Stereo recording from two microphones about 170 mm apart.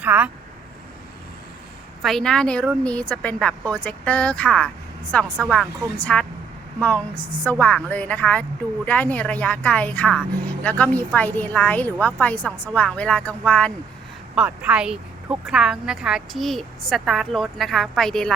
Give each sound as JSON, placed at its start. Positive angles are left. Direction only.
{"t": 0.0, "sound": "speech", "side_deg": -10}
{"t": 2.0, "sound": "a woman's voice", "side_deg": 0}
{"t": 14.3, "sound": "a woman's voice", "side_deg": -5}